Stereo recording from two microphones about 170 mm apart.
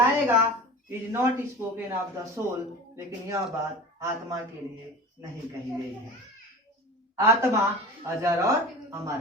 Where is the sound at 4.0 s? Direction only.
15° right (ahead or behind).